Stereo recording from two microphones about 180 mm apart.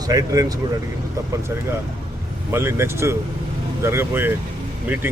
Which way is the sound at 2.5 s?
15° right (ahead or behind).